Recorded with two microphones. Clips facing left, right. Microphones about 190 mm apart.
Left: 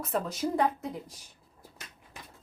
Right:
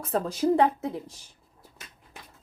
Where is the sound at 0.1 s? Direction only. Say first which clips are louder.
Right 4 dB; 35° right (ahead or behind).